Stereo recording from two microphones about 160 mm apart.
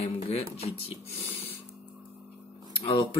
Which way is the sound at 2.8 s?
30° left (ahead or behind).